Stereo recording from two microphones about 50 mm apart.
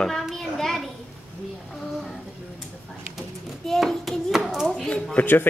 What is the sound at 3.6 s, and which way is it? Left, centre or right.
Child singing, centre.